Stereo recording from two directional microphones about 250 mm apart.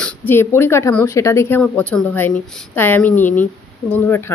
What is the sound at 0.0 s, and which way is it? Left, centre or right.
Speech, centre.